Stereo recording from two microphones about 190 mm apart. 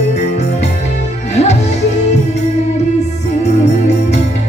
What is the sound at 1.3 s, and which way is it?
Music, 35° left (ahead or behind).